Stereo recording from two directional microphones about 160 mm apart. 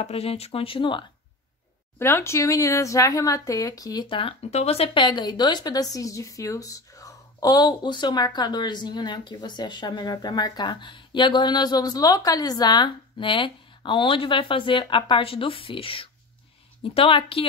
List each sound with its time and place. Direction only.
0.0 s speech: 40° left (ahead or behind)
2.0 s speech: 15° left (ahead or behind); by 17.5 s 35° left (ahead or behind)